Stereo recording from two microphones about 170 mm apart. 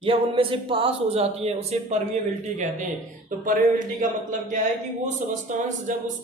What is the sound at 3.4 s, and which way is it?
Speech, 50° right (ahead or behind).